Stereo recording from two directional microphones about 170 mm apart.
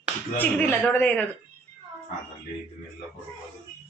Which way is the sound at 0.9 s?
10° left (ahead or behind).